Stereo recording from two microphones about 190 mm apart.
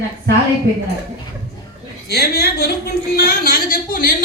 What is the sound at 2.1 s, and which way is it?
A woman's voice, 55° left (ahead or behind).